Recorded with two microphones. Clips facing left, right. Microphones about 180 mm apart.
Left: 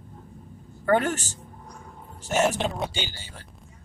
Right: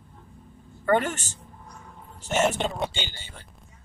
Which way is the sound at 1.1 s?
35° left (ahead or behind).